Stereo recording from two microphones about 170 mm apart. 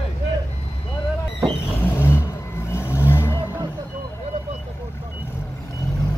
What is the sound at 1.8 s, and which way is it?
Vehicle, 15° left (ahead or behind).